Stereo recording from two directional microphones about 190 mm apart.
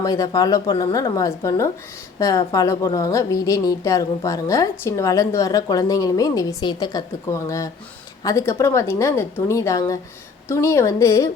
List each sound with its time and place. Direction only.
0.0 s a woman's voice: 20° left (ahead or behind)